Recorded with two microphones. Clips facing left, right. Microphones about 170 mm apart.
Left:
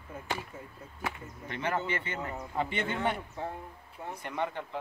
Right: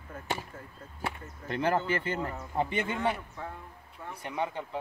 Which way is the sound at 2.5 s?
15° right (ahead or behind).